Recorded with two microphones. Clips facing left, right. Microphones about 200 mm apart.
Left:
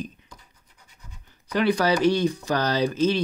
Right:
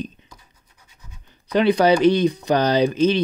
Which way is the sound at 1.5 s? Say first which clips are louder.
Right 5 dB; 20° right (ahead or behind).